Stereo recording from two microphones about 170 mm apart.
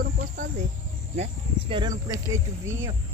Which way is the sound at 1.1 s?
40° right (ahead or behind).